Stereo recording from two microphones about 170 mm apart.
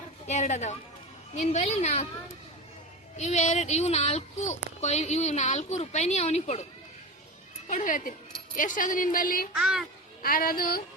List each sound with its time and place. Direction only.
0.3 s speech: 40° left (ahead or behind)
3.2 s speech: 40° left (ahead or behind)
7.7 s a woman's voice: 50° left (ahead or behind)
9.6 s a child's voice: 5° right (ahead or behind)
10.2 s a woman's voice: 60° left (ahead or behind)